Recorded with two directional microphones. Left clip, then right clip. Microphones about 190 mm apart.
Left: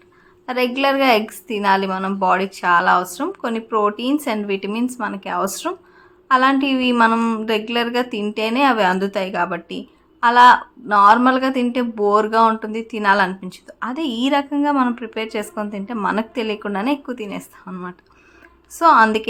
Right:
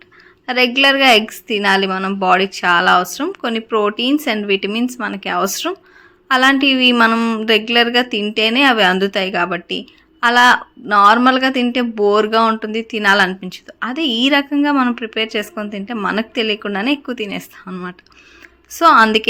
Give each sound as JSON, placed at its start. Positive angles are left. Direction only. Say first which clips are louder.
{"t": 0.4, "sound": "a woman's voice", "louder": "right 5 dB", "side_deg": -15}